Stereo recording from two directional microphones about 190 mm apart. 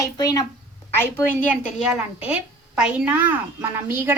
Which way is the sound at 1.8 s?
5° right (ahead or behind).